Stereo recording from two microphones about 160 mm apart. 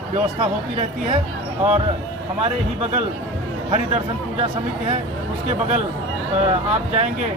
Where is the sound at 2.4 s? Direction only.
45° right (ahead or behind).